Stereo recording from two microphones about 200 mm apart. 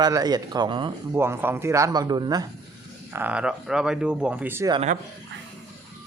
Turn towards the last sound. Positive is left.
turn(degrees=-10)  # may be behind; listen again after turning